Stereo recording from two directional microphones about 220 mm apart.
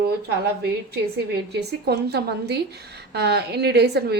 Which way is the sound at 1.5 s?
50° right (ahead or behind).